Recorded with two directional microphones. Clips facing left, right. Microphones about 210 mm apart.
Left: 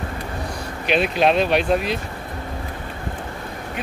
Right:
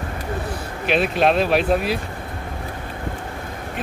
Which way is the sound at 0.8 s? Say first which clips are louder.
Even; centre (ahead or behind).